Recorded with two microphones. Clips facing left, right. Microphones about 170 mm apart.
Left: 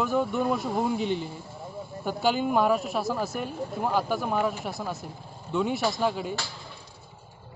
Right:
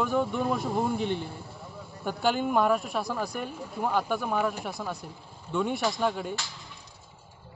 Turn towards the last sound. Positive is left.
turn(degrees=5)  # may be behind; listen again after turning